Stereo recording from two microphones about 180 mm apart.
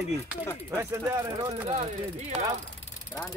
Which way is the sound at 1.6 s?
35° right (ahead or behind).